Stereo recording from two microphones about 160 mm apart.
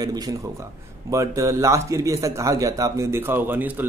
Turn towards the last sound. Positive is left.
turn(degrees=-10)  # may be behind; listen again after turning